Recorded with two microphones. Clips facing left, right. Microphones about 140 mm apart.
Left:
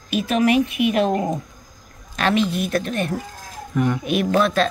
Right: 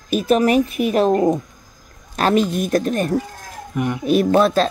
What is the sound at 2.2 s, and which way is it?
Speech, 40° right (ahead or behind).